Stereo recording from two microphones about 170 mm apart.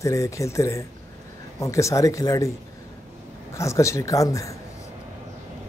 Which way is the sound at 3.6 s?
15° left (ahead or behind).